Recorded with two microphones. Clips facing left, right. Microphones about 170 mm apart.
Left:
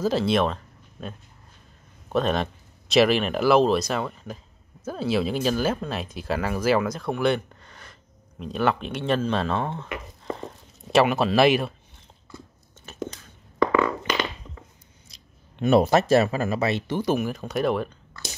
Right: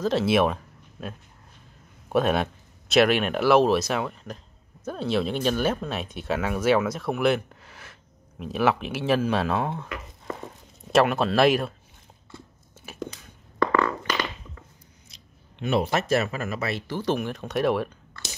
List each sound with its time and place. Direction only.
0.0 s speech: centre (ahead or behind)
10.2 s a sound: centre (ahead or behind)
12.9 s whispering: 10° right (ahead or behind)
13.6 s a sound: 10° left (ahead or behind)
15.0 s speech: 40° left (ahead or behind); by 17.0 s 20° left (ahead or behind)
17.0 s speech: 5° left (ahead or behind)